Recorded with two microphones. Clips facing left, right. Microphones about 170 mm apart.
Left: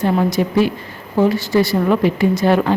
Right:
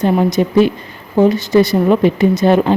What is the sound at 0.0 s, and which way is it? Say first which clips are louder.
Speech: right 3 dB; 20° right (ahead or behind).